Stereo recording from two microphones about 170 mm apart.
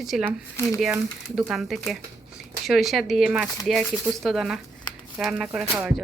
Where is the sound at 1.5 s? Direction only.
Centre (ahead or behind).